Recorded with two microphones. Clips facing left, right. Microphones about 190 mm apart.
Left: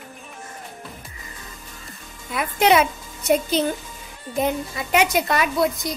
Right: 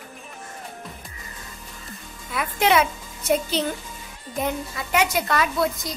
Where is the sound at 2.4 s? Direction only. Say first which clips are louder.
Left 3 dB; 20° left (ahead or behind).